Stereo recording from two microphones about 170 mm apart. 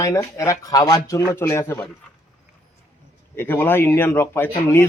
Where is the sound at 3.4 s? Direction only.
10° left (ahead or behind).